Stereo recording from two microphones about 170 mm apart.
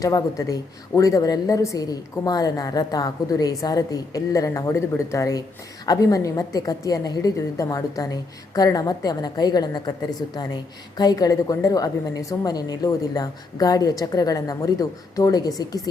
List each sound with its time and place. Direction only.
0.0 s a woman's voice: 20° left (ahead or behind)